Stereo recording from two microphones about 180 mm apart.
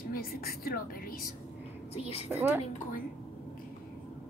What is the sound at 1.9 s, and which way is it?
Speech, 35° left (ahead or behind).